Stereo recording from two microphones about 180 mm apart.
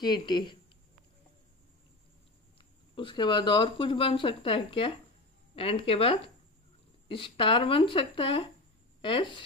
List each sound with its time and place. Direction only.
0.0 s speech: 25° left (ahead or behind)
3.0 s speech: 25° left (ahead or behind)